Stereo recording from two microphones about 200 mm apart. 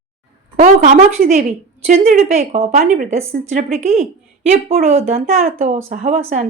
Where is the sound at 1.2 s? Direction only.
45° right (ahead or behind).